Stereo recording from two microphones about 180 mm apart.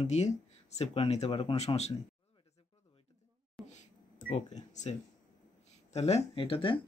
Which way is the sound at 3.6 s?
Centre (ahead or behind).